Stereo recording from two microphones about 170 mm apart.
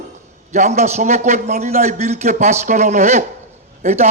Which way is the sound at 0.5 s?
45° right (ahead or behind).